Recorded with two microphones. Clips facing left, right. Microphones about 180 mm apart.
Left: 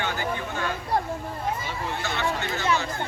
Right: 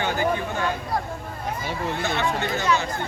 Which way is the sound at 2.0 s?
15° right (ahead or behind).